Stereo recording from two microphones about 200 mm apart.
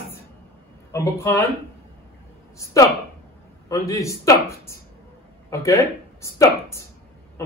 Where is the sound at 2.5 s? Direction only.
15° left (ahead or behind).